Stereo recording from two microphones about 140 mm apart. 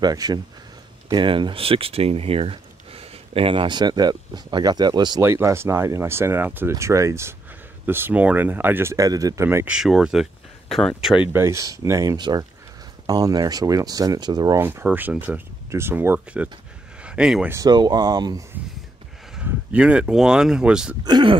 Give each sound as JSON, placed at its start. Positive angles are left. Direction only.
{"t": 0.0, "sound": "speech", "side_deg": -30}
{"t": 5.2, "sound": "speech", "side_deg": -20}
{"t": 9.7, "sound": "speech", "side_deg": -5}
{"t": 11.3, "sound": "speech", "side_deg": -20}
{"t": 14.6, "sound": "speech", "side_deg": -15}
{"t": 17.0, "sound": "a sound", "side_deg": -5}
{"t": 17.6, "sound": "speech", "side_deg": -30}
{"t": 19.3, "sound": "speech", "side_deg": -10}
{"t": 21.0, "sound": "speech", "side_deg": -30}